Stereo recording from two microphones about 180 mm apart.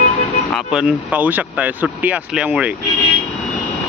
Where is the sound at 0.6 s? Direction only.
5° right (ahead or behind).